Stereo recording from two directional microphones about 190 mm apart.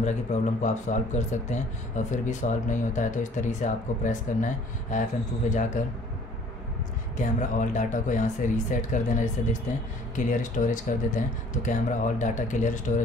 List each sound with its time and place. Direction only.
0.0 s speech: 40° left (ahead or behind)
5.8 s speech: 40° left (ahead or behind)
7.2 s speech: 40° left (ahead or behind)